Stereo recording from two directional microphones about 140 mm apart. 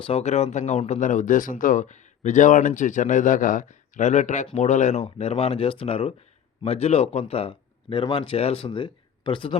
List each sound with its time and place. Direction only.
0.0 s speech: 45° left (ahead or behind)
5.0 s speech: 45° left (ahead or behind)